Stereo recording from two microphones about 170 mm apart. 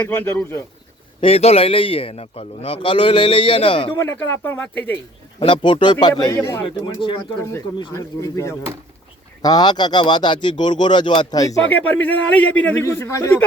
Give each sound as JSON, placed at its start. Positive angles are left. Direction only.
{"t": 0.1, "sound": "a man's voice", "side_deg": 10}
{"t": 1.2, "sound": "a man's voice", "side_deg": 35}
{"t": 3.9, "sound": "a man's voice", "side_deg": 15}
{"t": 5.4, "sound": "speech", "side_deg": 30}
{"t": 6.8, "sound": "speech", "side_deg": 30}
{"t": 7.9, "sound": "a man's voice", "side_deg": 15}
{"t": 11.6, "sound": "a man's voice", "side_deg": 10}